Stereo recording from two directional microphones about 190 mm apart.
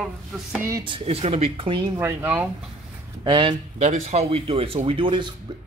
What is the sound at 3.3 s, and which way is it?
Speech, 25° right (ahead or behind).